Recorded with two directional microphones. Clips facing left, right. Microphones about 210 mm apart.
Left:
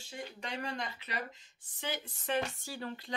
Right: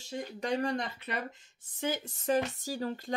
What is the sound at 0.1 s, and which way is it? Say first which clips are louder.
Speech: right 9 dB; 40° right (ahead or behind).